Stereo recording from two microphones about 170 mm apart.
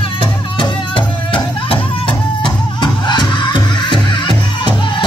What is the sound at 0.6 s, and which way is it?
Music, 30° left (ahead or behind).